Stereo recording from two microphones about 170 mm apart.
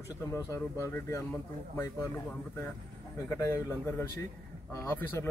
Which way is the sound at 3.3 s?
15° left (ahead or behind).